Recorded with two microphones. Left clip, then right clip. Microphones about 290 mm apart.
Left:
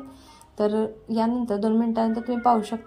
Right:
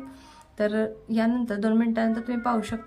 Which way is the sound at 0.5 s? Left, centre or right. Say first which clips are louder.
Left 2 dB; centre.